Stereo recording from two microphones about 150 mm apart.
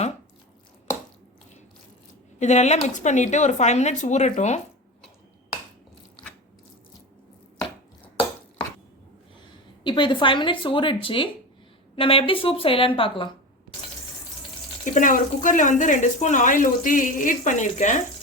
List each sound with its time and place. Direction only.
2.4 s speech: 50° left (ahead or behind)
9.8 s a woman's voice: 30° left (ahead or behind)
14.9 s speech: 60° left (ahead or behind)